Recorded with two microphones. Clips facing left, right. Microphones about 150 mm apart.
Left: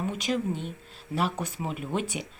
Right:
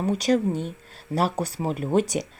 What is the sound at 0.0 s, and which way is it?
Speech, 40° right (ahead or behind).